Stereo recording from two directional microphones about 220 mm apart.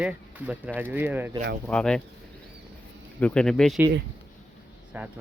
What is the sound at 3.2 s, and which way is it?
Speech, 5° left (ahead or behind).